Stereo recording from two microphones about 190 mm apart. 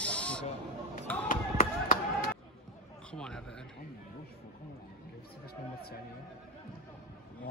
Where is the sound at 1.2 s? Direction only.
45° left (ahead or behind).